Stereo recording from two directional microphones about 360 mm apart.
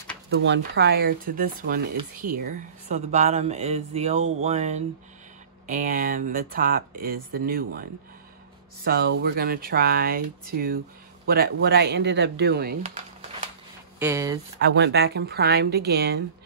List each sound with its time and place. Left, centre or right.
0.3 s speech: right
13.9 s speech: centre
14.6 s speech: right